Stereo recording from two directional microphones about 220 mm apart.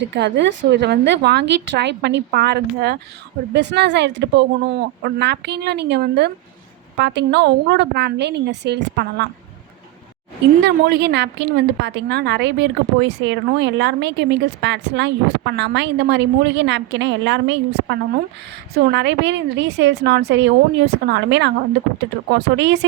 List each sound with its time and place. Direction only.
0.0 s a woman's voice: 50° right (ahead or behind)
10.6 s a woman's voice: 45° right (ahead or behind)